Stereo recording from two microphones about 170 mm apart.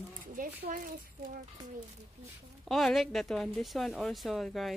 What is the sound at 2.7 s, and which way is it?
A woman's voice, centre (ahead or behind).